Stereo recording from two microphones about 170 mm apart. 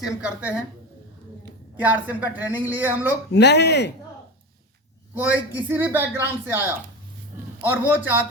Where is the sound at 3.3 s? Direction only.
85° left.